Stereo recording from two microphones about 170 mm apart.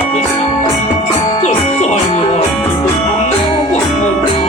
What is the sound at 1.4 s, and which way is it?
Music, 45° left (ahead or behind).